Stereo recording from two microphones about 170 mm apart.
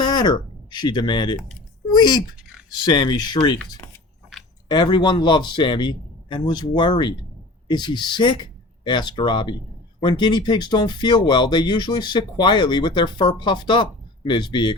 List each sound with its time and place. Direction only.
0.0 s speech: 25° left (ahead or behind)
4.7 s speech: 25° left (ahead or behind)